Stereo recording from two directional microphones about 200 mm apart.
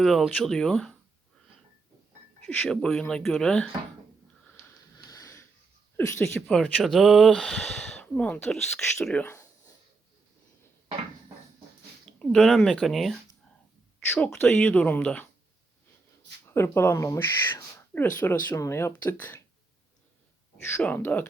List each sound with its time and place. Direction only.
0.0 s speech: centre (ahead or behind)
2.4 s speech: 5° left (ahead or behind)
5.0 s wheeze: 15° left (ahead or behind)
6.0 s speech: 10° left (ahead or behind)
6.6 s speech: centre (ahead or behind)
12.2 s speech: centre (ahead or behind)
16.5 s speech: 10° left (ahead or behind)
20.7 s speech: 10° left (ahead or behind)